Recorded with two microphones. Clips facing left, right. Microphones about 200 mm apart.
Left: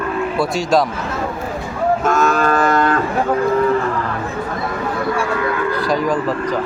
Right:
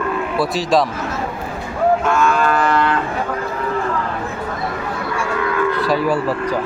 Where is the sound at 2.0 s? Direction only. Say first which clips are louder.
Left 1 dB; 40° left (ahead or behind).